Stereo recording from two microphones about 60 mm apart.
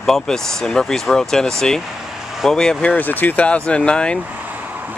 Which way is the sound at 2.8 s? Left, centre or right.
Left.